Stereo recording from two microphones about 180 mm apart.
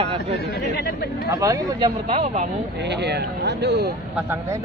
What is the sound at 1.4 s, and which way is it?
Speech, 20° right (ahead or behind).